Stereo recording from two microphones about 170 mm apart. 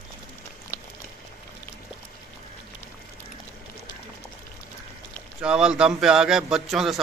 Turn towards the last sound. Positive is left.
turn(degrees=0)  # may be behind; listen again after turning